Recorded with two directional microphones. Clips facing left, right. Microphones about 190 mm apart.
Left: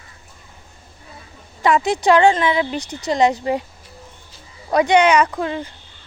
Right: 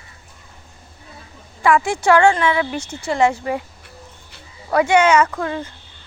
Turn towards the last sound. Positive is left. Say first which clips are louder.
# even
turn(degrees=15)  # may be behind; listen again after turning